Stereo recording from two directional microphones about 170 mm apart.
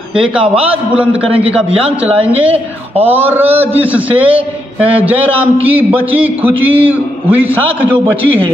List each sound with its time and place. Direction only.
0.1 s a man's voice: 35° right (ahead or behind)
3.0 s a man's voice: 10° right (ahead or behind)